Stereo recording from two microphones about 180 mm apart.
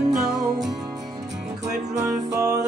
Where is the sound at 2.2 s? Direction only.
20° right (ahead or behind).